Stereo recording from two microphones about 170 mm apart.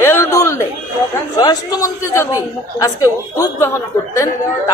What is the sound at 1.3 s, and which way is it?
A man's voice, 25° left (ahead or behind).